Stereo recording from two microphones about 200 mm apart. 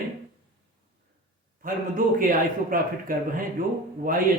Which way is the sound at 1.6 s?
45° right (ahead or behind).